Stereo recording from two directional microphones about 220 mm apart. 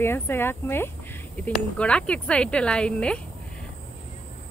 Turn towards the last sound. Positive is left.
turn(degrees=5)  # may be behind; listen again after turning